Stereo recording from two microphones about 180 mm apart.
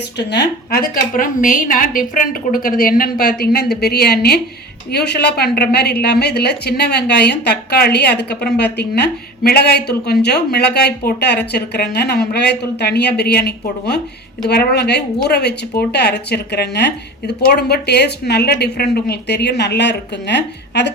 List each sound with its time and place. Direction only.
0.2 s a woman's voice: 70° left (ahead or behind)